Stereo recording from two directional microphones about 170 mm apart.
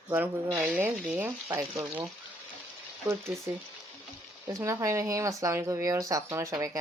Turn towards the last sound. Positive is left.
turn(degrees=-20)  # may be behind; listen again after turning